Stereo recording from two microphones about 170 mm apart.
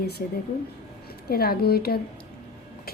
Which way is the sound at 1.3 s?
65° left (ahead or behind).